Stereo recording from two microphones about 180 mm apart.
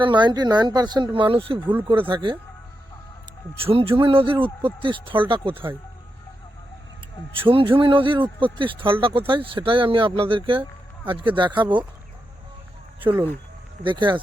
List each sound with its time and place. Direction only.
0.0 s speech: 25° right (ahead or behind)
3.6 s speech: 30° right (ahead or behind)
7.3 s speech: 30° right (ahead or behind)
13.8 s speech: 25° right (ahead or behind)